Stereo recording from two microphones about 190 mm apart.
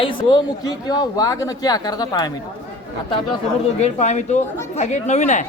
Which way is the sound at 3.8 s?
35° left (ahead or behind).